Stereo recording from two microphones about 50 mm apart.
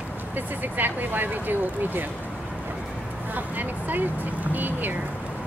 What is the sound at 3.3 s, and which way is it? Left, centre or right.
Speech, right.